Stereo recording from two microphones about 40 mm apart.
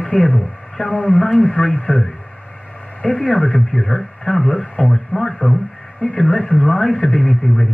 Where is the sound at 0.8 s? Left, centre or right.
Left.